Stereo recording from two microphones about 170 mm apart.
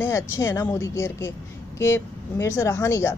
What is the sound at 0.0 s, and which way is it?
Speech, 15° left (ahead or behind).